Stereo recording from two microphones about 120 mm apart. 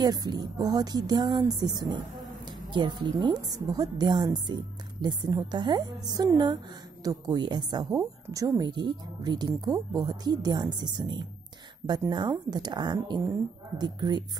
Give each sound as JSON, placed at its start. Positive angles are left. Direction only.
{"t": 0.0, "sound": "speech", "side_deg": -35}